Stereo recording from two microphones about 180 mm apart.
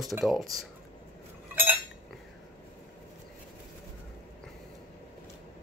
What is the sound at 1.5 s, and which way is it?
Cutlery, 10° right (ahead or behind).